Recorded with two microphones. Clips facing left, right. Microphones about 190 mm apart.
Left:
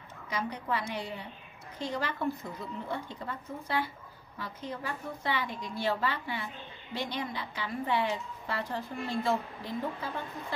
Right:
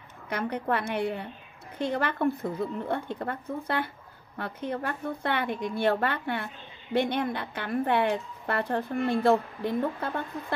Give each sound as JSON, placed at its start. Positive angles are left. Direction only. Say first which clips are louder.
{"t": 0.3, "sound": "a woman's voice", "louder": "right 5 dB", "side_deg": -60}